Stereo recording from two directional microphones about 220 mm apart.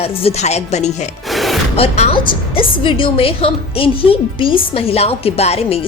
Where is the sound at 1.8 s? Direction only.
25° left (ahead or behind).